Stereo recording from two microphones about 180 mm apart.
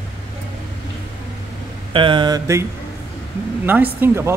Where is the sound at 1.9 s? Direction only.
25° right (ahead or behind).